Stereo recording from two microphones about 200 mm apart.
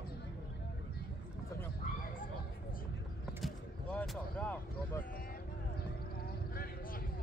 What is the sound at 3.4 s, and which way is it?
Vehicle, 5° left (ahead or behind).